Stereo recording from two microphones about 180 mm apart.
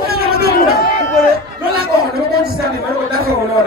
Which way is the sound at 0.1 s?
60° right (ahead or behind).